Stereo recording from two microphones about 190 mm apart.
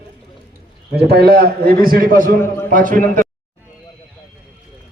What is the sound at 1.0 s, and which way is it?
A man's voice, 55° right (ahead or behind).